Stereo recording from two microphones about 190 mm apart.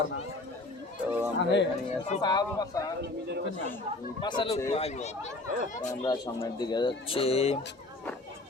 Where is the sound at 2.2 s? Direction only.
20° left (ahead or behind).